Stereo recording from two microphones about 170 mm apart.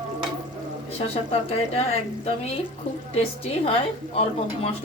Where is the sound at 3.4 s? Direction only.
35° left (ahead or behind).